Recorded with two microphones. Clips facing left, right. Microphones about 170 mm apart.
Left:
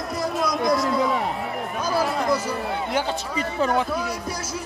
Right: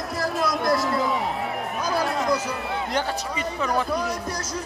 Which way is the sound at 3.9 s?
5° left (ahead or behind).